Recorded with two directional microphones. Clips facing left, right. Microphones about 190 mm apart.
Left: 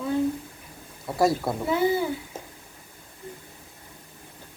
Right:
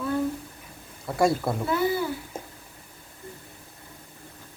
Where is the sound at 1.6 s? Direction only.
20° left (ahead or behind).